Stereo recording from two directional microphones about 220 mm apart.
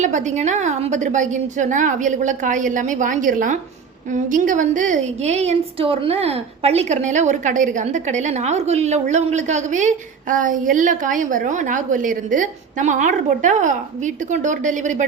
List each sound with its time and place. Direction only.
0.0 s a woman's voice: 35° right (ahead or behind)